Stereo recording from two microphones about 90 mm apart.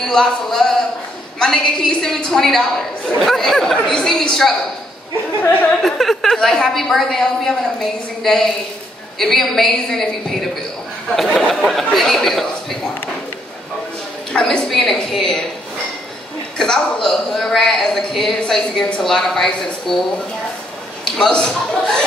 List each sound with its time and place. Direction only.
0.0 s a man's voice: 5° left (ahead or behind)
5.4 s a woman's voice: 15° left (ahead or behind)
5.8 s a man's voice: 5° left (ahead or behind)
14.3 s a woman's voice: 10° left (ahead or behind)
16.5 s a man's voice: 5° left (ahead or behind)
21.0 s a woman's voice: 5° left (ahead or behind)